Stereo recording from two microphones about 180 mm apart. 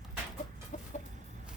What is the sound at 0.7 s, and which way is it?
Chicken, 45° left (ahead or behind).